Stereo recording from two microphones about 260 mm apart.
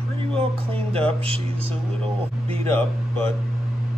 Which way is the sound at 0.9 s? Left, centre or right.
Right.